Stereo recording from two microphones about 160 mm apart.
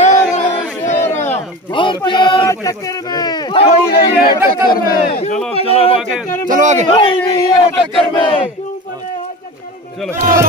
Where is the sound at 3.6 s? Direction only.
65° left (ahead or behind).